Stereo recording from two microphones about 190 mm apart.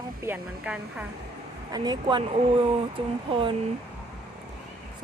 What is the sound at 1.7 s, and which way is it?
A woman's voice, 20° right (ahead or behind).